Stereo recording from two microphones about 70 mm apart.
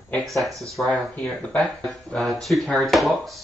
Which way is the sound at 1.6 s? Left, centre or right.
Centre.